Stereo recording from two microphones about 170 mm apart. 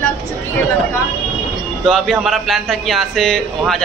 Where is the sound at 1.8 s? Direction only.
Centre (ahead or behind).